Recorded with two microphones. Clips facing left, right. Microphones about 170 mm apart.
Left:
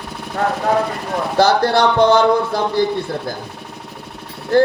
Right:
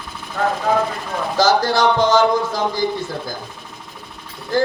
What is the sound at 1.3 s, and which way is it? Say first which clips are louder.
Speech: left 2 dB; 60° left (ahead or behind).